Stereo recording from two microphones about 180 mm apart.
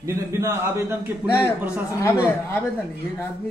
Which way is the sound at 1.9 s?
15° left (ahead or behind).